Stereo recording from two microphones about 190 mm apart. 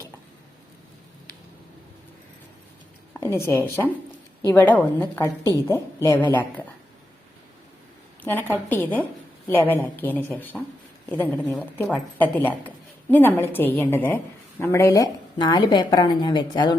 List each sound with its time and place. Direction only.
3.2 s a sound: 15° left (ahead or behind)
4.4 s a woman's voice: 10° left (ahead or behind)
8.2 s a woman's voice: 10° left (ahead or behind)